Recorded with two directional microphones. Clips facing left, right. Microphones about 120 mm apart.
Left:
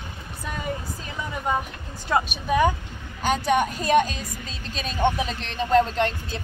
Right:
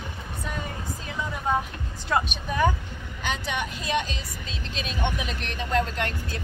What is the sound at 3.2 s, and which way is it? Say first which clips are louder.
A woman's voice: left 9 dB; 40° left (ahead or behind).